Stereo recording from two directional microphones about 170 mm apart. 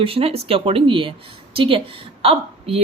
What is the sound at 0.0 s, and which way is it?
A woman's voice, 35° right (ahead or behind).